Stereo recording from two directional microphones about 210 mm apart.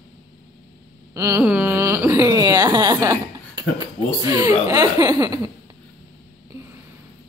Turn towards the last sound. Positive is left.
turn(degrees=-15)  # may be behind; listen again after turning